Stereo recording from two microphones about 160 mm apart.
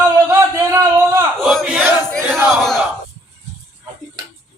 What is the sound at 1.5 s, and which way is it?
Speech, 5° right (ahead or behind).